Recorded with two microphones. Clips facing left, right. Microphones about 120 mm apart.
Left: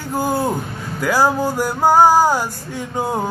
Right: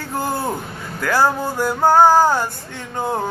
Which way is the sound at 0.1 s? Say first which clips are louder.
Left 4 dB; 10° left (ahead or behind).